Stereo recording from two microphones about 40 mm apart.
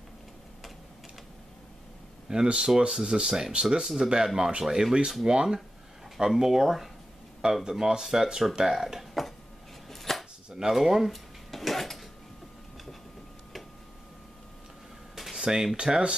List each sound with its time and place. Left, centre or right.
2.2 s speech: centre
4.4 s speech: right
9.2 s a sound: centre
9.8 s chopping: centre
10.5 s speech: centre
11.5 s a sound: centre
15.3 s speech: centre